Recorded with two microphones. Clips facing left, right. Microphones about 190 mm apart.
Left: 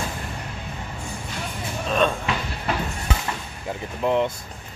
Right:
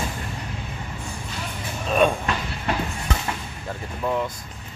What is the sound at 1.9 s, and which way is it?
Music, 10° right (ahead or behind).